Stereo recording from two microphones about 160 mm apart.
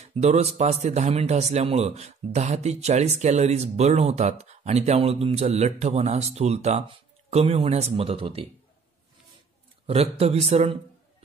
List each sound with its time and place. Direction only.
0.0 s speech: 45° right (ahead or behind)
9.8 s speech: 40° right (ahead or behind)